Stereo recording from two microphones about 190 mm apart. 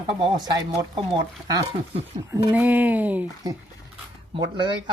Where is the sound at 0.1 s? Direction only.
25° right (ahead or behind).